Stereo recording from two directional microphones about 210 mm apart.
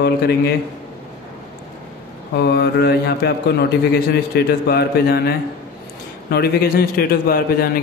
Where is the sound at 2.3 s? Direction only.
50° left (ahead or behind).